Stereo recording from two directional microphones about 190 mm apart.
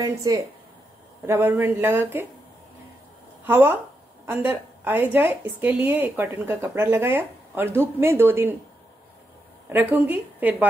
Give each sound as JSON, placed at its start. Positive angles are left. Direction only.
{"t": 0.0, "sound": "a woman's voice", "side_deg": -20}
{"t": 3.4, "sound": "a woman's voice", "side_deg": -10}
{"t": 9.7, "sound": "a woman's voice", "side_deg": -10}